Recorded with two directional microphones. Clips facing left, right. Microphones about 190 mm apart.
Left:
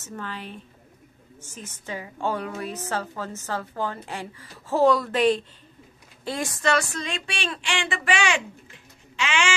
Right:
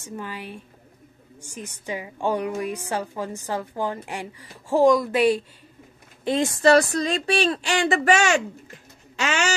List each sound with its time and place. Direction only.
0.0 s a woman's voice: 15° right (ahead or behind)
6.2 s speech: 25° right (ahead or behind); by 9.5 s 40° right (ahead or behind)